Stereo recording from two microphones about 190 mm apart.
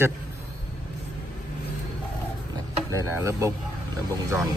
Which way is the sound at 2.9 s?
15° right (ahead or behind).